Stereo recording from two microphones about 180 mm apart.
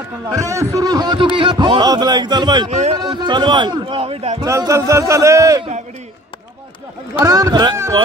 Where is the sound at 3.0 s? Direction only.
25° right (ahead or behind).